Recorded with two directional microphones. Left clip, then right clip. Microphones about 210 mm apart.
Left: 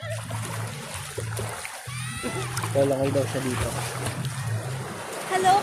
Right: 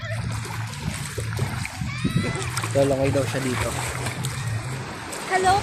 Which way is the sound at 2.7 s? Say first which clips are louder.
Right 2 dB; 25° right (ahead or behind).